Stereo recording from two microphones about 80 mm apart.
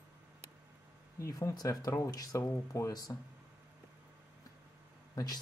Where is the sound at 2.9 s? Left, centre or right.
Left.